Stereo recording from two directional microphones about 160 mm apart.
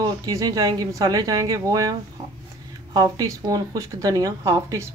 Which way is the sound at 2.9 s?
25° right (ahead or behind).